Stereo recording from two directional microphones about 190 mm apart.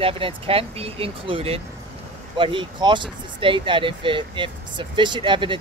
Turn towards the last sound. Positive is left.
turn(degrees=-25)  # may be behind; listen again after turning